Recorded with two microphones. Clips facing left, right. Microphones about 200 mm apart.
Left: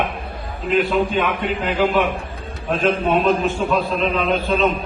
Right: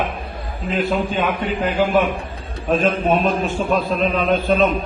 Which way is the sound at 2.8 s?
45° right (ahead or behind).